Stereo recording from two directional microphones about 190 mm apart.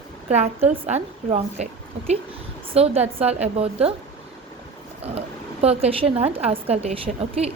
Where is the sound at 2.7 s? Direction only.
35° right (ahead or behind).